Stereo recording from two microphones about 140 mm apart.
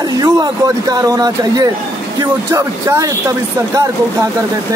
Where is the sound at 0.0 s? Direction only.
30° right (ahead or behind).